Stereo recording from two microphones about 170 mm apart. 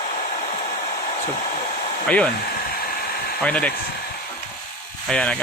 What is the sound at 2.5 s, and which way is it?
Hair dryer, 60° left (ahead or behind).